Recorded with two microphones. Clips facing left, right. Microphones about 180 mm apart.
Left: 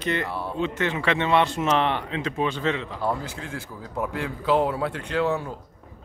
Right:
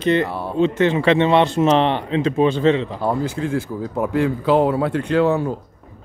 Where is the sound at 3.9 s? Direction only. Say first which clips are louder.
Right 9 dB; 40° right (ahead or behind).